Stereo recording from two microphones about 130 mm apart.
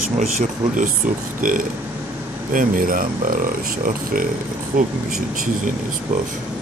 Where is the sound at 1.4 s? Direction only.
90° right.